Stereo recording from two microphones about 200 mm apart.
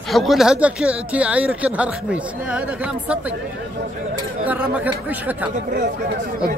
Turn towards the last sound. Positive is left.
turn(degrees=-5)  # may be behind; listen again after turning